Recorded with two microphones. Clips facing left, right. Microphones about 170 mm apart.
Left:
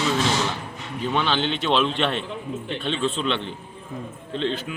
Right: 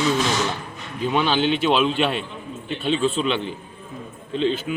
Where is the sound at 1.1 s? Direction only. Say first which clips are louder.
Right 4 dB; 10° right (ahead or behind).